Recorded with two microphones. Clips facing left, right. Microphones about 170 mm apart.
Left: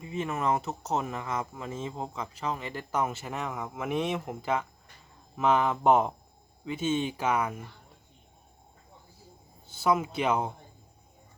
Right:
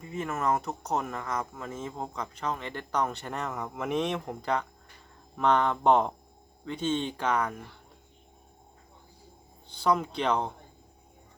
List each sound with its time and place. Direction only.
0.0 s speech: 20° left (ahead or behind)
9.7 s speech: 5° left (ahead or behind)